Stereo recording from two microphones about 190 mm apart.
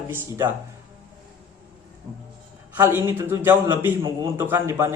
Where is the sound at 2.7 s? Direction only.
10° right (ahead or behind).